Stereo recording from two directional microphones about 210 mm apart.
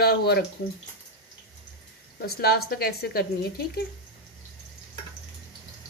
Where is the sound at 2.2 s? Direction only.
50° left (ahead or behind).